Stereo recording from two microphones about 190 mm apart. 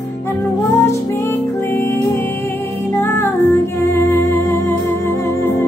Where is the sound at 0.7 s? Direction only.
15° left (ahead or behind).